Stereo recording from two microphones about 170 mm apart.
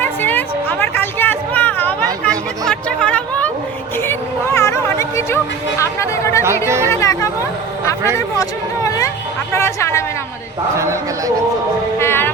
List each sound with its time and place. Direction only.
0.0 s a sound: 10° left (ahead or behind)
2.2 s chatter: 5° left (ahead or behind)
3.9 s a sound: 15° left (ahead or behind)
5.8 s music: 15° left (ahead or behind)
6.7 s speech: 15° right (ahead or behind)
6.9 s speech: 20° left (ahead or behind)
8.4 s a sound: 20° left (ahead or behind)
9.5 s speech: 15° left (ahead or behind)
11.9 s music: 15° left (ahead or behind)